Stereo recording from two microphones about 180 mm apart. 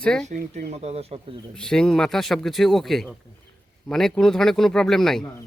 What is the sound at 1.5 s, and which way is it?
Speech, 5° left (ahead or behind).